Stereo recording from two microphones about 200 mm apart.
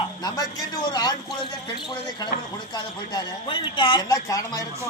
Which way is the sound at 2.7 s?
25° left (ahead or behind).